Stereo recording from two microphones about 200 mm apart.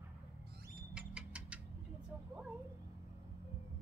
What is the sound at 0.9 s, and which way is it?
Rodents, 5° right (ahead or behind).